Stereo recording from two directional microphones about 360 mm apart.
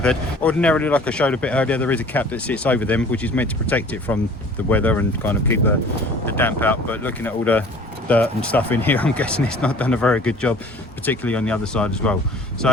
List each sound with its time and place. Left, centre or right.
0.0 s speech: centre